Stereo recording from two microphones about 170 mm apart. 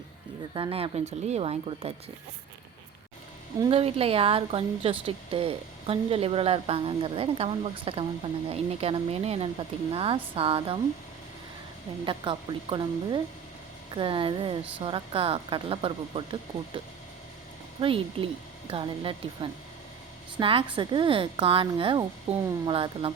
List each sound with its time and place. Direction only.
0.5 s a woman's voice: 30° right (ahead or behind)
3.6 s a woman's voice: 35° right (ahead or behind)
12.0 s a woman's voice: 30° right (ahead or behind)